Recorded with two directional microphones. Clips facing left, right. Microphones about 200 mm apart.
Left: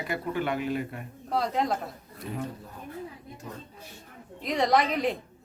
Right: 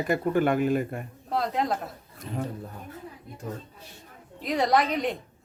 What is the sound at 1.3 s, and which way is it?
Speech, centre (ahead or behind).